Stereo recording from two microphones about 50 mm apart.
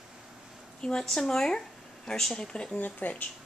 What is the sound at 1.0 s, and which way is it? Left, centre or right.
A woman's voice, centre.